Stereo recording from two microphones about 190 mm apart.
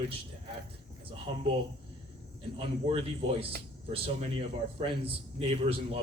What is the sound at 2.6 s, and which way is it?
A man's voice, 30° right (ahead or behind).